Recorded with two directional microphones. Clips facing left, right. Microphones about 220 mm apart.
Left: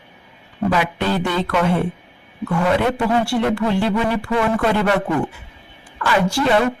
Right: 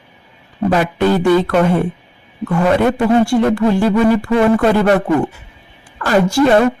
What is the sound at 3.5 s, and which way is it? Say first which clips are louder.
Speech: right 5 dB; 45° right (ahead or behind).